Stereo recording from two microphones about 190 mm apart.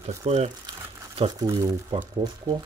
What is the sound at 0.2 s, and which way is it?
Speech, 35° right (ahead or behind).